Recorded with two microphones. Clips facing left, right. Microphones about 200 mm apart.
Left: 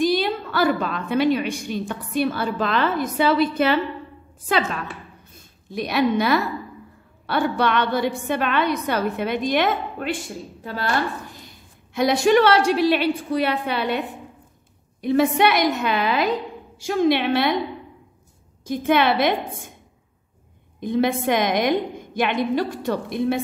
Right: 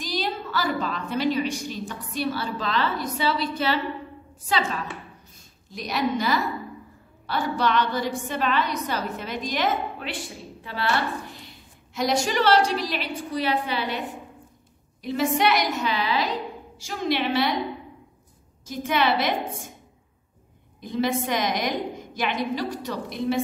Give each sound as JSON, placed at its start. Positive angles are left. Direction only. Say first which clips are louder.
{"t": 0.0, "sound": "a woman's voice", "louder": "left 8 dB", "side_deg": 55}
{"t": 5.7, "sound": "a woman's voice", "louder": "left 5 dB", "side_deg": 60}
{"t": 10.6, "sound": "a woman's voice", "louder": "left 2 dB", "side_deg": 45}
{"t": 18.7, "sound": "a woman's voice", "louder": "left 5 dB", "side_deg": 55}
{"t": 20.8, "sound": "a woman's voice", "louder": "left 5 dB", "side_deg": 55}